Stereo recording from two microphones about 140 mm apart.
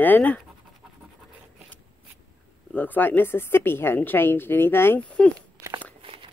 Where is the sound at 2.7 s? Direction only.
15° left (ahead or behind).